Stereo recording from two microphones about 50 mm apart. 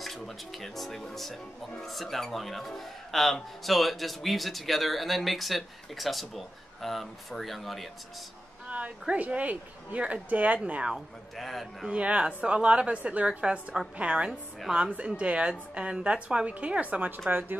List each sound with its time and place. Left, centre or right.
0.0 s speech: centre
8.6 s a woman's voice: right
10.6 s a woman's voice: right
11.3 s speech: centre
11.9 s a woman's voice: right
17.3 s speech: right